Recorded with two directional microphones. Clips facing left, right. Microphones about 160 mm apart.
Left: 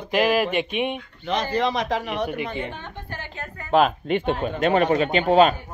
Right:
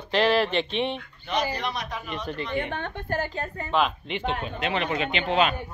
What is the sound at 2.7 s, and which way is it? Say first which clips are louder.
Speech: right 5 dB; 60° right (ahead or behind).